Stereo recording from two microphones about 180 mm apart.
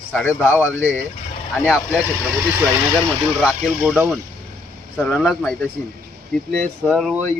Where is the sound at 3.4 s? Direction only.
5° right (ahead or behind).